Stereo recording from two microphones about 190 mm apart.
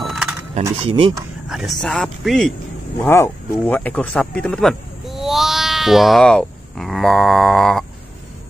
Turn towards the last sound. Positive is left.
turn(degrees=0)  # may be behind; listen again after turning